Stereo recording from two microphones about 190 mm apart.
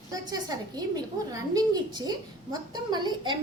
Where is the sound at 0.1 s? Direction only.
20° right (ahead or behind).